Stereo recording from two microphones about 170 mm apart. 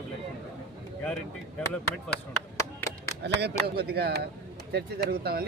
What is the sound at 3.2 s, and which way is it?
Speech, 75° right (ahead or behind).